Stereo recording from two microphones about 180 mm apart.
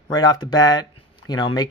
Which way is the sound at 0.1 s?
20° left (ahead or behind).